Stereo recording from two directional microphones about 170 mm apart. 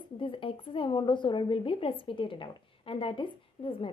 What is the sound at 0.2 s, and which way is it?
A woman's voice, 30° left (ahead or behind).